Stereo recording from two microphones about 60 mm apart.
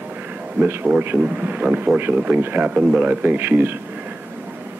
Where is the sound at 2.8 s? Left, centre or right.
Right.